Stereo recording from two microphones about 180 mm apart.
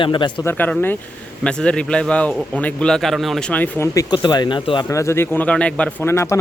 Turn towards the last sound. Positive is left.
turn(degrees=15)  # may be behind; listen again after turning